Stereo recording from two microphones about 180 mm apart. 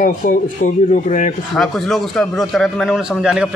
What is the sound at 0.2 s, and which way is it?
Speech, 50° left (ahead or behind).